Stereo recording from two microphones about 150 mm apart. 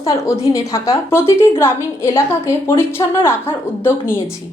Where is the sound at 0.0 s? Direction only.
20° left (ahead or behind).